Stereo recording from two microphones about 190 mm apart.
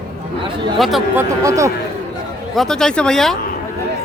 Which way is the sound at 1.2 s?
15° right (ahead or behind).